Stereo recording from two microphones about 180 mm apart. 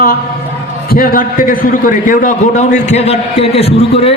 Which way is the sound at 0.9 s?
50° left (ahead or behind).